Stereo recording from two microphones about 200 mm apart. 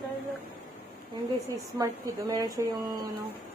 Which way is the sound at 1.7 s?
15° right (ahead or behind).